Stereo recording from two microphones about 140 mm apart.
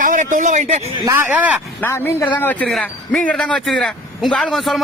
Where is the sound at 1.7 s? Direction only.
15° left (ahead or behind).